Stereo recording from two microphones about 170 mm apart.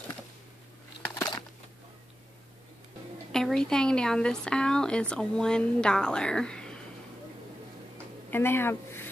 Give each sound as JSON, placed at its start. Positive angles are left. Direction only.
{"t": 1.1, "sound": "a sound", "side_deg": 25}
{"t": 3.3, "sound": "a woman's voice", "side_deg": 5}
{"t": 8.3, "sound": "speech", "side_deg": 15}